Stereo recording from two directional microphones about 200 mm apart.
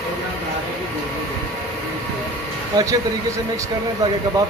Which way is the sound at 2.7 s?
15° right (ahead or behind).